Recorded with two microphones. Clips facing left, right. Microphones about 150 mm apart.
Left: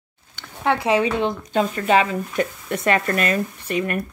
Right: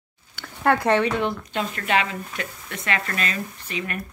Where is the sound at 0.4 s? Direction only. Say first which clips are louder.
Right 1 dB; centre (ahead or behind).